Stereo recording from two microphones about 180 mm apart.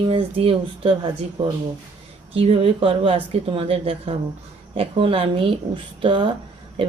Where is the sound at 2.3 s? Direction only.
35° right (ahead or behind).